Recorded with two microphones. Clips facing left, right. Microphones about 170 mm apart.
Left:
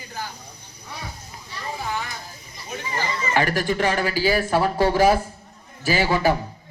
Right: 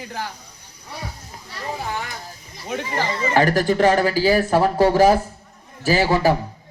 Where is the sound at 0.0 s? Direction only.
75° right (ahead or behind).